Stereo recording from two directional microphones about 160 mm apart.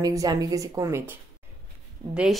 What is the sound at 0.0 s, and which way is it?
Speech, 20° right (ahead or behind).